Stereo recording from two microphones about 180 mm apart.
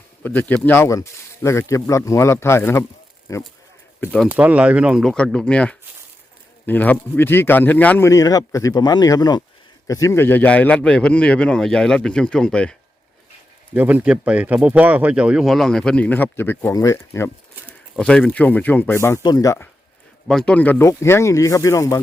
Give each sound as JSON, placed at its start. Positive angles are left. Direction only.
{"t": 0.2, "sound": "speech", "side_deg": 10}
{"t": 4.0, "sound": "speech", "side_deg": 5}
{"t": 4.3, "sound": "speech", "side_deg": -10}
{"t": 13.7, "sound": "speech", "side_deg": -10}
{"t": 17.9, "sound": "speech", "side_deg": 5}
{"t": 20.2, "sound": "speech", "side_deg": 5}